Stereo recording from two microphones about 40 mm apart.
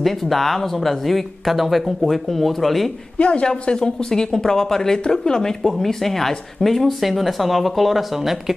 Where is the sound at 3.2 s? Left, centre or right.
Left.